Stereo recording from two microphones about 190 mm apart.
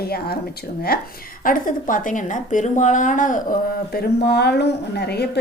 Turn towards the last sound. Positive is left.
turn(degrees=60)  # may be behind; listen again after turning